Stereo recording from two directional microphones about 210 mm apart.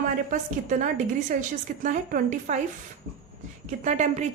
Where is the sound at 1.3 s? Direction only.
40° right (ahead or behind).